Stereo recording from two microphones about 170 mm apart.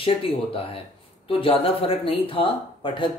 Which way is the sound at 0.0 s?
30° left (ahead or behind).